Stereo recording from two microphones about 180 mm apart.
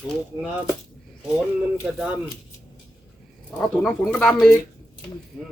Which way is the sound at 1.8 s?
5° right (ahead or behind).